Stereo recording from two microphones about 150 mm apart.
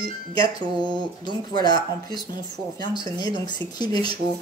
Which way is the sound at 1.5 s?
30° left (ahead or behind).